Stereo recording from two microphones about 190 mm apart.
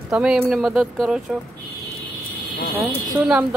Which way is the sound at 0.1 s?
5° right (ahead or behind).